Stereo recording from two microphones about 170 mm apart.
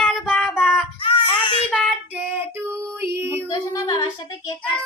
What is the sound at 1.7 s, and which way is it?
Child singing, 5° right (ahead or behind).